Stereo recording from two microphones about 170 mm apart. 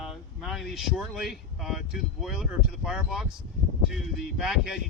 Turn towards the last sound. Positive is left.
turn(degrees=0)  # may be behind; listen again after turning